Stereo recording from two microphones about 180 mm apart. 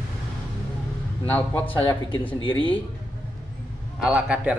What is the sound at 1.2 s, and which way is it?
Speech, 10° left (ahead or behind).